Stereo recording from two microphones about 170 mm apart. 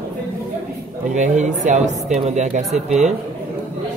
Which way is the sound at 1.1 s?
45° right (ahead or behind).